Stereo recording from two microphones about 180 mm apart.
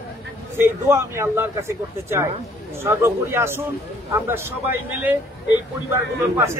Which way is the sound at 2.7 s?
15° right (ahead or behind).